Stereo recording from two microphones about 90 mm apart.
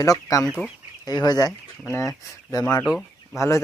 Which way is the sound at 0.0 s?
40° left (ahead or behind).